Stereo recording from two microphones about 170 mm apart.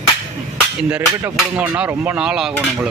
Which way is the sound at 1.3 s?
5° right (ahead or behind).